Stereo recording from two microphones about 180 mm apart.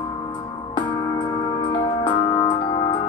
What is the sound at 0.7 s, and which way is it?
Music, 20° left (ahead or behind).